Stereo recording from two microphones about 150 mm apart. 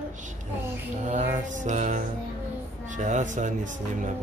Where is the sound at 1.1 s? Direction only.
55° right (ahead or behind).